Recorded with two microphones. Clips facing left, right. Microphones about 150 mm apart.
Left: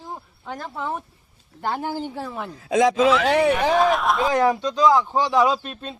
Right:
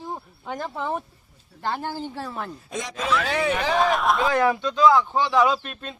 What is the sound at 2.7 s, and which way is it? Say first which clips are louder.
Speech: left 16 dB; 90° left.